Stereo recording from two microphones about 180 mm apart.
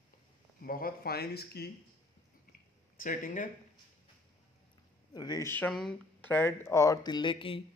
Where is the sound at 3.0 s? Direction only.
45° left (ahead or behind).